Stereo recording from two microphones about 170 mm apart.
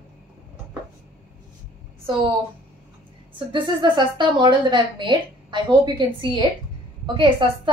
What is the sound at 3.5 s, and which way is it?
A woman's voice, 25° right (ahead or behind).